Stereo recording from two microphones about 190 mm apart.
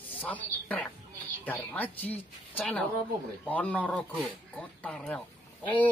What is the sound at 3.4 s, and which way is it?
Speech, 10° left (ahead or behind).